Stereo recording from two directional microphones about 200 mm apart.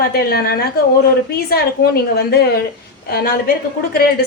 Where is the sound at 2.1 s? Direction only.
50° left (ahead or behind).